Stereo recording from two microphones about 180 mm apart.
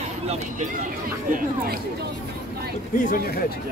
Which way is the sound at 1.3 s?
55° right (ahead or behind).